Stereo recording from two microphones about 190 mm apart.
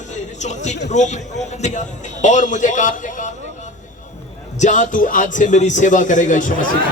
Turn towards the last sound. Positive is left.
turn(degrees=45)  # may be behind; listen again after turning